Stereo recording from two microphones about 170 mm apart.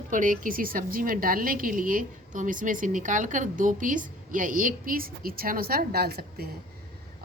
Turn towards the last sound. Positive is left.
turn(degrees=-65)  # may be behind; listen again after turning